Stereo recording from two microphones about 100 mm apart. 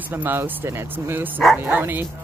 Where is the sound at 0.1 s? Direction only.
20° right (ahead or behind).